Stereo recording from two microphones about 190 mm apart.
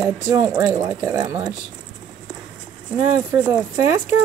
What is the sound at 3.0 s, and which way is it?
Speech, 10° right (ahead or behind).